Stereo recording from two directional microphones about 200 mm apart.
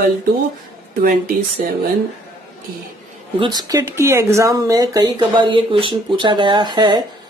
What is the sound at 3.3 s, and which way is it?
Speech, 20° right (ahead or behind).